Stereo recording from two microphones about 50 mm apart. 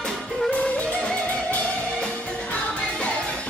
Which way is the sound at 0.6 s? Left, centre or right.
Left.